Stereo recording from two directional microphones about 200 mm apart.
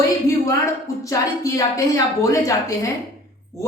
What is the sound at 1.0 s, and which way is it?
A woman's voice, 15° left (ahead or behind).